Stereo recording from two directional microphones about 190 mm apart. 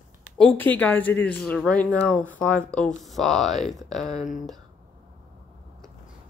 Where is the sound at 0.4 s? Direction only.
10° left (ahead or behind).